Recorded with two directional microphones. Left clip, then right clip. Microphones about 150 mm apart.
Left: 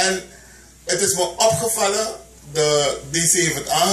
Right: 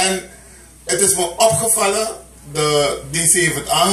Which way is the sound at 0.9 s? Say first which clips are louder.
Right 2 dB; centre (ahead or behind).